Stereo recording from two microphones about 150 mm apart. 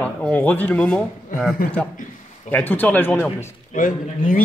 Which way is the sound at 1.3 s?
70° left (ahead or behind).